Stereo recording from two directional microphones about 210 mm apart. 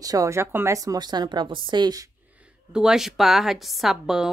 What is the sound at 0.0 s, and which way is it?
A woman's voice, 15° right (ahead or behind).